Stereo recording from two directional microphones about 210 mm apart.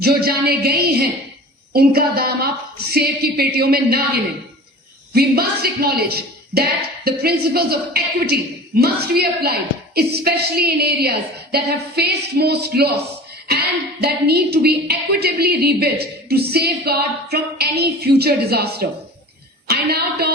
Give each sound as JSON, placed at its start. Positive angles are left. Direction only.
{"t": 0.0, "sound": "a woman's voice", "side_deg": -45}
{"t": 5.1, "sound": "a woman's voice", "side_deg": -45}